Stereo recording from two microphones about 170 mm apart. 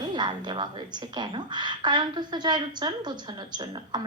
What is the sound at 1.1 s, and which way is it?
A woman's voice, 25° right (ahead or behind).